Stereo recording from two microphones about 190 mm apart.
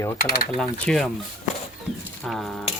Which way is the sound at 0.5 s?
Centre (ahead or behind).